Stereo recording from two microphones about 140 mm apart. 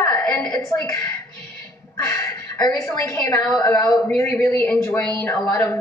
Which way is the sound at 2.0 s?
20° left (ahead or behind).